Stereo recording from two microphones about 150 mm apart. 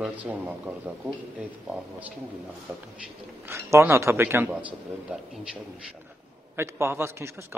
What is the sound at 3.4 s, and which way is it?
Speech, 15° right (ahead or behind).